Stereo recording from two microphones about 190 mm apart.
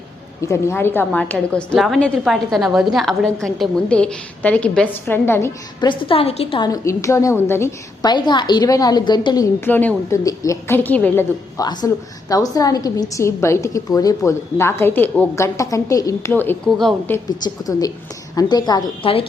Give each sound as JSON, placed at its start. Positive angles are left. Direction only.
{"t": 0.4, "sound": "a woman's voice", "side_deg": 15}
{"t": 5.9, "sound": "a woman's voice", "side_deg": 25}
{"t": 17.2, "sound": "a woman's voice", "side_deg": 20}